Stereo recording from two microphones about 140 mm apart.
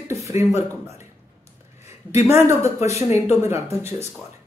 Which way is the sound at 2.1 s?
20° right (ahead or behind).